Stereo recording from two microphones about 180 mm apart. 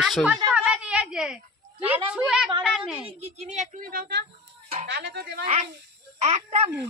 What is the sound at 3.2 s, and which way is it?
Speech, 35° right (ahead or behind).